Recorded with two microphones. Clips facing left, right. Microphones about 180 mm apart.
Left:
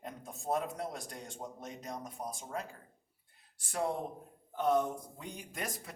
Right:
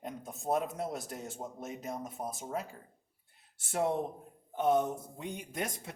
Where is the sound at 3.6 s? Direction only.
25° right (ahead or behind).